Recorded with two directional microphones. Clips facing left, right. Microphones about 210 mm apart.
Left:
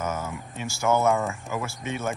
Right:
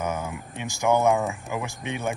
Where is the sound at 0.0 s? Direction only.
15° right (ahead or behind).